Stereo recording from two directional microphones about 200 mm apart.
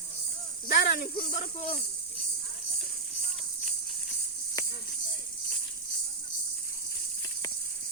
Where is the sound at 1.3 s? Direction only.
35° left (ahead or behind).